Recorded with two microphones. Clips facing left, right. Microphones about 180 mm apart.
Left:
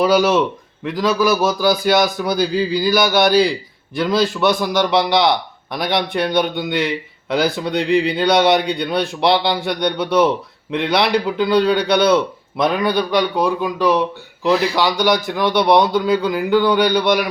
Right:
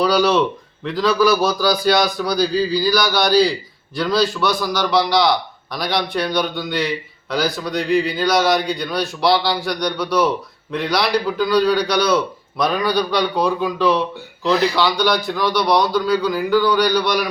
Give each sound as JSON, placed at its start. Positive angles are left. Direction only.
{"t": 0.0, "sound": "a man's voice", "side_deg": 20}